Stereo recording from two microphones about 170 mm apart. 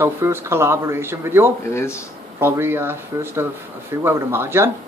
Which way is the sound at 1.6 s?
15° left (ahead or behind).